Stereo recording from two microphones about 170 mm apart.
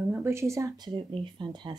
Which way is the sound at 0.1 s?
15° right (ahead or behind).